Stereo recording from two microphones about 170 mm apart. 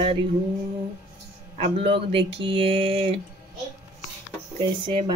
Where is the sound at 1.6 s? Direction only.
35° right (ahead or behind).